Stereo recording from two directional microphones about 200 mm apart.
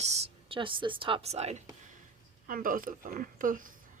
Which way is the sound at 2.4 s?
45° right (ahead or behind).